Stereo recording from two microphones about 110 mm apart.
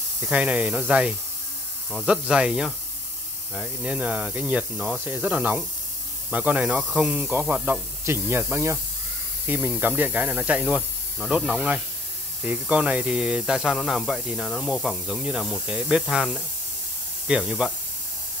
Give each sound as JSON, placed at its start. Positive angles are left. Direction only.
{"t": 0.2, "sound": "speech", "side_deg": -10}